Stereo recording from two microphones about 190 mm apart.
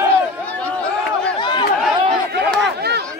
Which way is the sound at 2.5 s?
60° right (ahead or behind).